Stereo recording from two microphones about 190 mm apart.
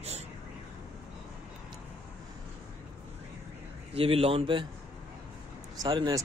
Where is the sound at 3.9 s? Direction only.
30° right (ahead or behind).